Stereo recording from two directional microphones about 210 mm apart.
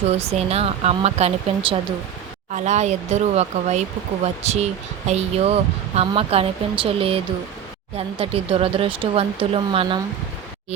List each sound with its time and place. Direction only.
0.1 s speech: 30° right (ahead or behind)